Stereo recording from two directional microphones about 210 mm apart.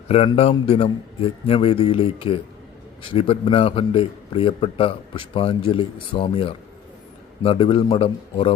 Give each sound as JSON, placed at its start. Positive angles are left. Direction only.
{"t": 0.1, "sound": "a man's voice", "side_deg": 30}